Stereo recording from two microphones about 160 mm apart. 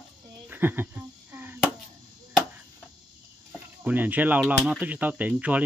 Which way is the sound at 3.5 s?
10° right (ahead or behind).